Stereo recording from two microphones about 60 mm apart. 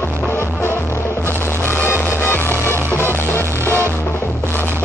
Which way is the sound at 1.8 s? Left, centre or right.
Left.